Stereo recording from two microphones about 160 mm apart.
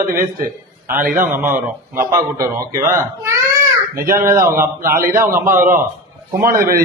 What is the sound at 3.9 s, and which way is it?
Speech, 65° right (ahead or behind).